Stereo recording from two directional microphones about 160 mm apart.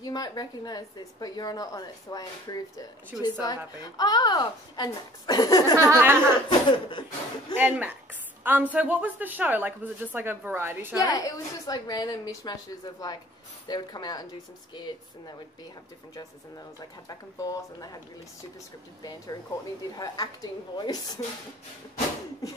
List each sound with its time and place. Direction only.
0.0 s a woman's voice: 25° left (ahead or behind)
5.8 s a woman's voice: 15° right (ahead or behind)
6.7 s speech: 30° left (ahead or behind)
7.5 s a woman's voice: 10° right (ahead or behind)
11.0 s a woman's voice: 20° left (ahead or behind)
17.1 s a woman's voice: 20° left (ahead or behind)
19.0 s a woman's voice: 25° left (ahead or behind)
20.7 s a woman's voice: 25° left (ahead or behind)